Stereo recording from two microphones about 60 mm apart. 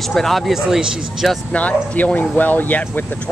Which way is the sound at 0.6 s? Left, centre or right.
Centre.